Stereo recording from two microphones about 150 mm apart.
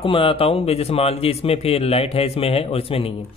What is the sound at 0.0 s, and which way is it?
Speech, 35° left (ahead or behind).